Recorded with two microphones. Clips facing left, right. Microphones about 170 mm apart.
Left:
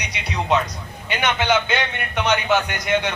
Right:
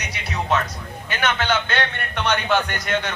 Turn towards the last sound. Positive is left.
turn(degrees=10)  # may be behind; listen again after turning